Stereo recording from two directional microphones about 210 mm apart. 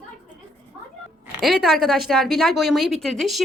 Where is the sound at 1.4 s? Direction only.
Centre (ahead or behind).